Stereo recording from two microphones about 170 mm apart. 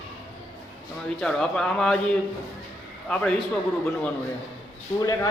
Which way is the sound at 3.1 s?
5° left (ahead or behind).